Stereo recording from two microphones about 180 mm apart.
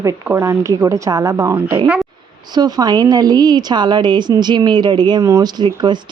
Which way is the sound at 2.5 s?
20° right (ahead or behind).